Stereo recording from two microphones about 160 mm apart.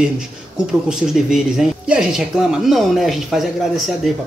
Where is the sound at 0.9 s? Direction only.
5° right (ahead or behind).